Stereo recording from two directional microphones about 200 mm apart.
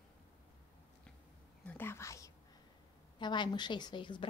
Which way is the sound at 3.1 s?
25° left (ahead or behind).